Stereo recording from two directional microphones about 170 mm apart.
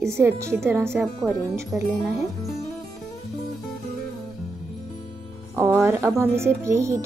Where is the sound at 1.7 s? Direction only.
Centre (ahead or behind).